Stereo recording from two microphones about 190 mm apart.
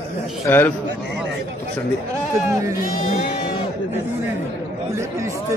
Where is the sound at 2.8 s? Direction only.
45° left (ahead or behind).